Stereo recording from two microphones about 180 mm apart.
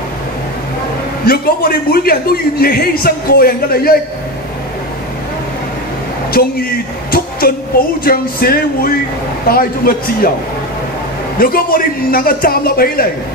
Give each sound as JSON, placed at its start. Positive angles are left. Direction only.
{"t": 1.2, "sound": "a man's voice", "side_deg": 55}
{"t": 7.1, "sound": "a sound", "side_deg": 55}
{"t": 8.0, "sound": "a man's voice", "side_deg": 55}
{"t": 11.3, "sound": "a man's voice", "side_deg": 55}